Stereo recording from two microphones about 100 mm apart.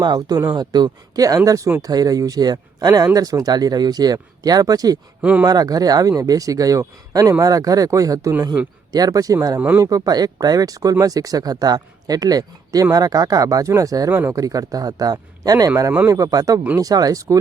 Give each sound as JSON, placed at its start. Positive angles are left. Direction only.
{"t": 0.0, "sound": "speech", "side_deg": -45}
{"t": 5.2, "sound": "speech", "side_deg": -15}
{"t": 5.5, "sound": "speech", "side_deg": -40}
{"t": 9.6, "sound": "speech", "side_deg": -15}
{"t": 9.8, "sound": "speech", "side_deg": -35}
{"t": 14.1, "sound": "speech", "side_deg": -20}
{"t": 14.3, "sound": "speech", "side_deg": -35}